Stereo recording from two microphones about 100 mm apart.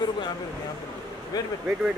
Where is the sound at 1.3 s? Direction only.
40° left (ahead or behind).